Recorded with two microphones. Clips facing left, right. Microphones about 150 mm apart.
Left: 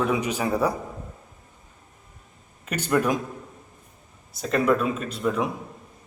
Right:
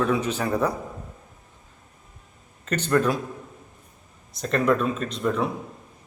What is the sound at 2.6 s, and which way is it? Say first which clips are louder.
Speech: right 1 dB; 10° left (ahead or behind).